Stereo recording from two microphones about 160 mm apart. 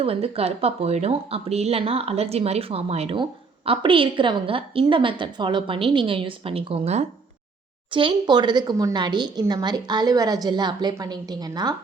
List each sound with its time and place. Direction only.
0.0 s a woman's voice: 40° right (ahead or behind)
7.9 s a woman's voice: 30° right (ahead or behind)